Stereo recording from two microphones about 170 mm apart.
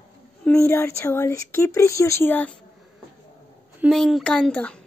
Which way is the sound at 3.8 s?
Centre (ahead or behind).